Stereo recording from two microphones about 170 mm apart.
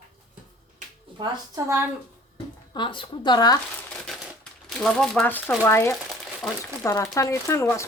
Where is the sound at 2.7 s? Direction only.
30° left (ahead or behind).